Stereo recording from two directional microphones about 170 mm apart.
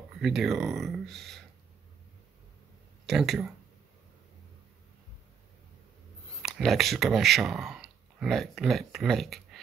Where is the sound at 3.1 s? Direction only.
Centre (ahead or behind).